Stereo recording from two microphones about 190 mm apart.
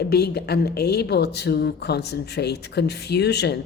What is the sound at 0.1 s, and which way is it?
A woman's voice, 55° left (ahead or behind).